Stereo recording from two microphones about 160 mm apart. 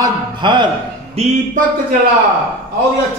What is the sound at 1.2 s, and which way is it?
Speech, 40° right (ahead or behind).